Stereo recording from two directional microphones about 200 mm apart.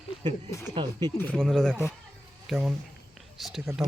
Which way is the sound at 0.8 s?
25° right (ahead or behind).